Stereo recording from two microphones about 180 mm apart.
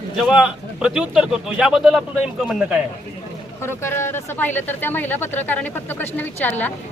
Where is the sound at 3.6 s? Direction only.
15° left (ahead or behind).